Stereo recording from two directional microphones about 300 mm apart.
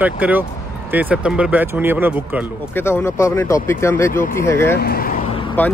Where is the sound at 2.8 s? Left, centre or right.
Centre.